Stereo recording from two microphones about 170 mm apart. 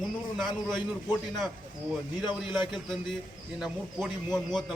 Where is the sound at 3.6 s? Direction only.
Centre (ahead or behind).